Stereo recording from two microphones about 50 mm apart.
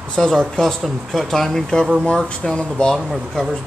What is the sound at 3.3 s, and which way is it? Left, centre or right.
Speech, centre.